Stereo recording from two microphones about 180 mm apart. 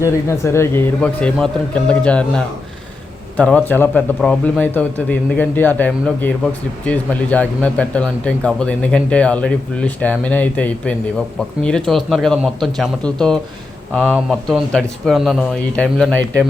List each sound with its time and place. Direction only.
0.3 s a man's voice: 15° left (ahead or behind)